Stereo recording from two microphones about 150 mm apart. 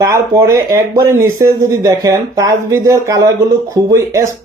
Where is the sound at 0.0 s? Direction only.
20° right (ahead or behind).